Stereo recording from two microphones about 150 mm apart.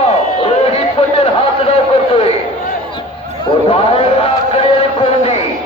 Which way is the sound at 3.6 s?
40° left (ahead or behind).